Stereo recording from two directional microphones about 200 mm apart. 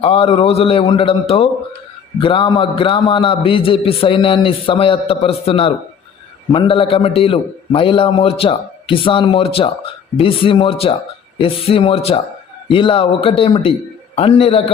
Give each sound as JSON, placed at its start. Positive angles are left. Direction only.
{"t": 0.0, "sound": "a man's voice", "side_deg": 25}